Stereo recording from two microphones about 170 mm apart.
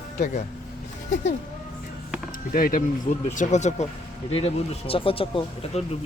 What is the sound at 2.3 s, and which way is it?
Speech, 55° left (ahead or behind).